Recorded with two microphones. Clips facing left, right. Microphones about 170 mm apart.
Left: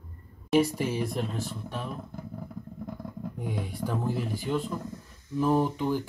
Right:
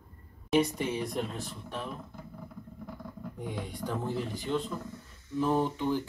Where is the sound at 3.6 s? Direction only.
5° left (ahead or behind).